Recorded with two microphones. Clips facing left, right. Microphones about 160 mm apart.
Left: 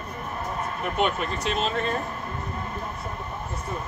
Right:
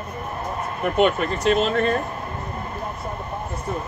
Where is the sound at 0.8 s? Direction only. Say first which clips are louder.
Right 7 dB; 60° right (ahead or behind).